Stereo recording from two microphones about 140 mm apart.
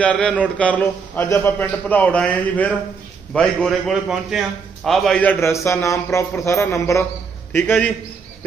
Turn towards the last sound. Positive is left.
turn(degrees=10)  # may be behind; listen again after turning